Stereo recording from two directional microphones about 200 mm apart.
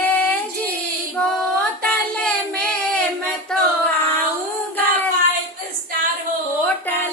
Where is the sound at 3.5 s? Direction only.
Centre (ahead or behind).